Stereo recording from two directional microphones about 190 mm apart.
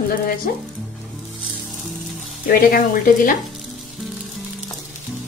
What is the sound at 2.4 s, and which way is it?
Speech, 50° left (ahead or behind).